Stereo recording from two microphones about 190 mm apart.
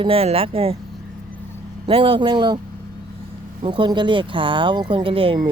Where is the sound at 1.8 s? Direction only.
30° right (ahead or behind).